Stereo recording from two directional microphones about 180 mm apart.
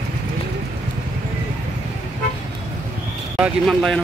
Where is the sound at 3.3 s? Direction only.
Centre (ahead or behind).